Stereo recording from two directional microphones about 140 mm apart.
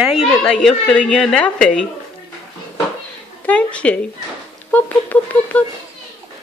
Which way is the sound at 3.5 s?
10° left (ahead or behind).